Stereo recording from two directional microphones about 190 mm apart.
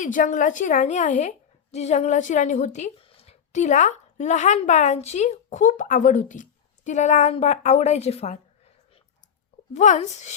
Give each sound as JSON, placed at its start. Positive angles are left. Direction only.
{"t": 0.0, "sound": "a woman's voice", "side_deg": 45}
{"t": 9.7, "sound": "a woman's voice", "side_deg": 40}